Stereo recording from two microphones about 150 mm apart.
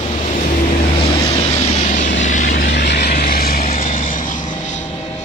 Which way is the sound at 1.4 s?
45° left (ahead or behind).